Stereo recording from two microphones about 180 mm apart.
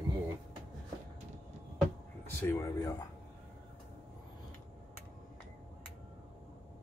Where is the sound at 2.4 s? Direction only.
15° left (ahead or behind).